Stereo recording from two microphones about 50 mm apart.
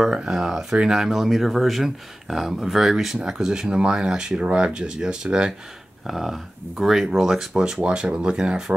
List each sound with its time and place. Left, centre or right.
0.0 s speech: centre